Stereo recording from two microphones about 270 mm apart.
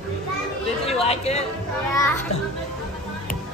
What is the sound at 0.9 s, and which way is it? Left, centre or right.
Speech, left.